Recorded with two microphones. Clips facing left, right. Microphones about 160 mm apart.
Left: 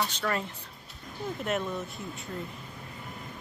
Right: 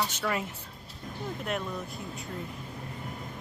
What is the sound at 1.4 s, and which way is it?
Speech, centre (ahead or behind).